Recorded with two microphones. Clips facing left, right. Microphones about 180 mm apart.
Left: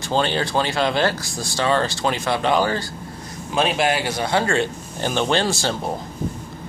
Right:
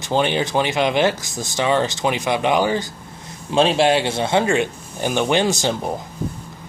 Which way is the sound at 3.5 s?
30° right (ahead or behind).